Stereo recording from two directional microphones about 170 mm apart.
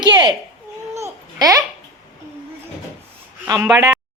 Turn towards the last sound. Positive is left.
turn(degrees=-15)  # may be behind; listen again after turning